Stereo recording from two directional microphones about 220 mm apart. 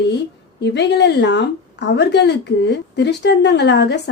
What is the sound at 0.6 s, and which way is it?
A woman's voice, 50° left (ahead or behind).